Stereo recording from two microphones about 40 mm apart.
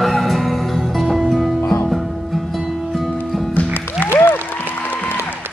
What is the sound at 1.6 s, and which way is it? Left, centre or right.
Music, left.